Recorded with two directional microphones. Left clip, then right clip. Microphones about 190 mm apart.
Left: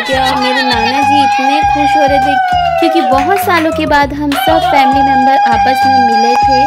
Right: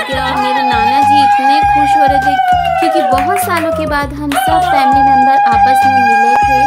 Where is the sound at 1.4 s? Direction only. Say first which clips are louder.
Right 1 dB; 15° left (ahead or behind).